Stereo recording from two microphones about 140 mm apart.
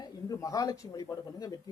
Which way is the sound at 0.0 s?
25° left (ahead or behind).